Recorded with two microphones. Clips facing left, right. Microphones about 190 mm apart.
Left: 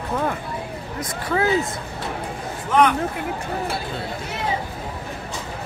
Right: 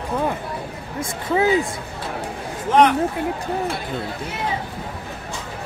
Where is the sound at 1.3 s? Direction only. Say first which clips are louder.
Right 2 dB; 15° right (ahead or behind).